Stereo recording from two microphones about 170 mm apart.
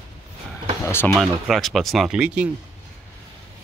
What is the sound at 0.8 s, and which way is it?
Speech, 15° left (ahead or behind).